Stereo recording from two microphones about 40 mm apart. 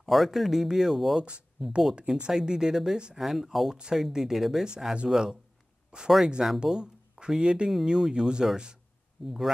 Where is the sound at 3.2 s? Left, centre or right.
Centre.